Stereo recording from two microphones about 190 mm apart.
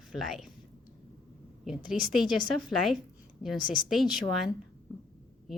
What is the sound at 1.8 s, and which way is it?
Speech, centre (ahead or behind).